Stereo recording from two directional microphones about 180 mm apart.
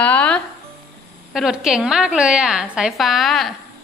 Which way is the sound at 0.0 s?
10° left (ahead or behind).